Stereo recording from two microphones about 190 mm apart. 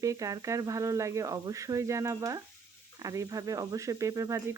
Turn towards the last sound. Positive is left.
turn(degrees=-15)  # may be behind; listen again after turning